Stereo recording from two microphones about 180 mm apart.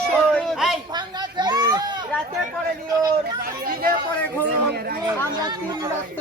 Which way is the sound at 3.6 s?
55° right (ahead or behind).